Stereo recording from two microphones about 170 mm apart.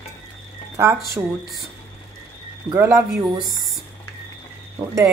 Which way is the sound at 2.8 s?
15° right (ahead or behind).